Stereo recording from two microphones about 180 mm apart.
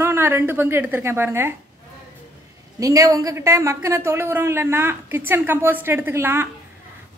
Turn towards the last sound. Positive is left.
turn(degrees=-15)  # may be behind; listen again after turning